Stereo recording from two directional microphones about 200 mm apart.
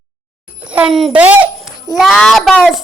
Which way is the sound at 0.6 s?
5° right (ahead or behind).